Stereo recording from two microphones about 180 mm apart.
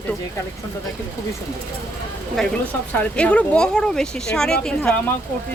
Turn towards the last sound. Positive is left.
turn(degrees=5)  # may be behind; listen again after turning